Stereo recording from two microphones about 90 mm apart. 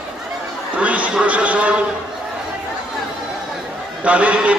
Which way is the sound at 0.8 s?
15° right (ahead or behind).